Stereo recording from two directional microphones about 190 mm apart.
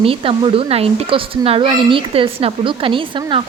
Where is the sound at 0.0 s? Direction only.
30° right (ahead or behind).